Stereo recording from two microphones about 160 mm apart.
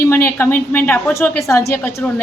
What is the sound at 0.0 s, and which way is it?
A woman's voice, 15° left (ahead or behind).